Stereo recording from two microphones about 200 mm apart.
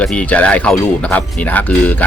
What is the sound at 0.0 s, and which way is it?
Speech, 5° left (ahead or behind).